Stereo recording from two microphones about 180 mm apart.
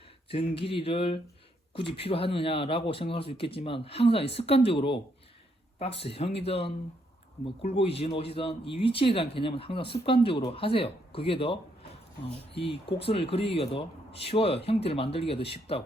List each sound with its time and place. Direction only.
0.3 s speech: 30° left (ahead or behind)